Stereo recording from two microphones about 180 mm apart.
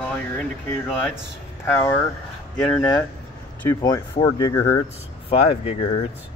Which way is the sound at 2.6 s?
5° left (ahead or behind).